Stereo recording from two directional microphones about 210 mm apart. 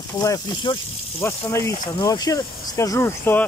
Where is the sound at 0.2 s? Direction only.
15° left (ahead or behind).